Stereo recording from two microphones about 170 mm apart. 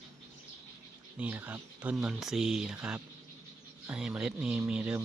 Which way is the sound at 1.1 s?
10° right (ahead or behind).